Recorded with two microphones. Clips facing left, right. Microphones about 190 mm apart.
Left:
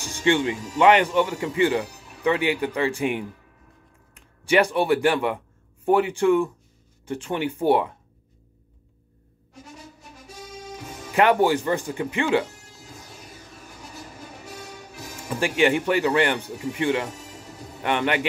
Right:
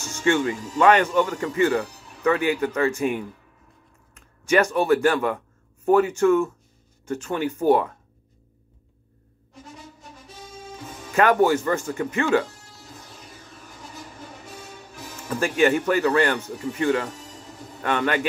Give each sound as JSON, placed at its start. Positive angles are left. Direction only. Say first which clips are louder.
{"t": 0.1, "sound": "speech", "louder": "even", "side_deg": 15}
{"t": 11.1, "sound": "speech", "louder": "right 1 dB", "side_deg": 15}
{"t": 15.3, "sound": "speech", "louder": "right 1 dB", "side_deg": 20}